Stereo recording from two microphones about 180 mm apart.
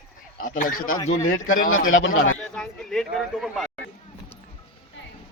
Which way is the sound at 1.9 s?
90° left.